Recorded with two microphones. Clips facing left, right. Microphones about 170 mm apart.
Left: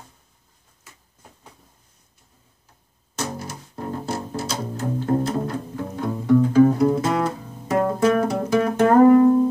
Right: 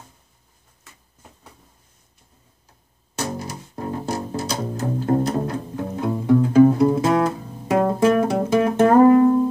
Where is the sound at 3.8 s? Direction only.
15° right (ahead or behind).